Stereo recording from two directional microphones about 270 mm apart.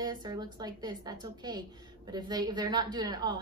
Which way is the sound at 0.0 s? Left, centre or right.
Centre.